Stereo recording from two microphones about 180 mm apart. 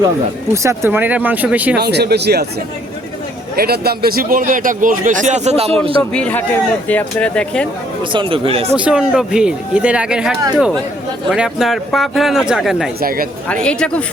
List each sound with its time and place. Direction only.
0.5 s speech: 15° right (ahead or behind)
1.7 s speech: 65° right (ahead or behind)
3.5 s a man's voice: 60° right (ahead or behind); by 5.9 s 35° right (ahead or behind)
6.0 s speech: 5° left (ahead or behind)
8.1 s speech: 30° right (ahead or behind)
8.7 s speech: 5° right (ahead or behind)
13.0 s a man's voice: 55° right (ahead or behind)
13.5 s speech: 5° left (ahead or behind)